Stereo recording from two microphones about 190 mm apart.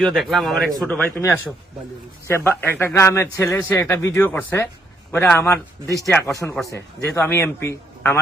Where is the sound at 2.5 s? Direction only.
10° left (ahead or behind).